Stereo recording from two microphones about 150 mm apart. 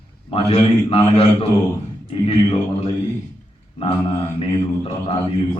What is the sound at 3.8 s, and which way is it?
Speech, 40° left (ahead or behind).